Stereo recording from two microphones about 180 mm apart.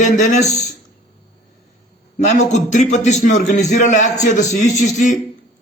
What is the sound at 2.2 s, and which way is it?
A man's voice, 40° left (ahead or behind).